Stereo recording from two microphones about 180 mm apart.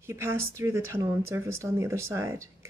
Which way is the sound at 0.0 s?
15° right (ahead or behind).